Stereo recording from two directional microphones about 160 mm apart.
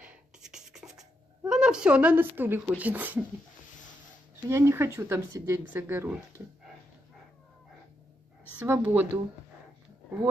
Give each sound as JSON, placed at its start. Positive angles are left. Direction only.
{"t": 0.0, "sound": "writing", "side_deg": -5}
{"t": 4.5, "sound": "speech", "side_deg": -15}
{"t": 8.5, "sound": "speech", "side_deg": -10}